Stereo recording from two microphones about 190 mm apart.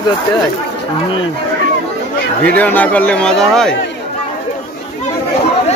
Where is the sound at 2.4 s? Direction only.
10° left (ahead or behind).